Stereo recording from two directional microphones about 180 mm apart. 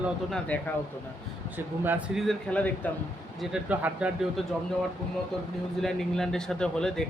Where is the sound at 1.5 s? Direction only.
10° right (ahead or behind).